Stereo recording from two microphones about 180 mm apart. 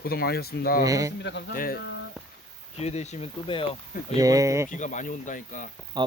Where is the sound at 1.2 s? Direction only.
75° left (ahead or behind).